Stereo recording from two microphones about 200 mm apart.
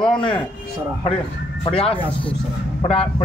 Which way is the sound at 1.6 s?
30° left (ahead or behind).